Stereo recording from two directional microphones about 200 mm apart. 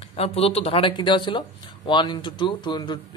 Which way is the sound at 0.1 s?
30° left (ahead or behind).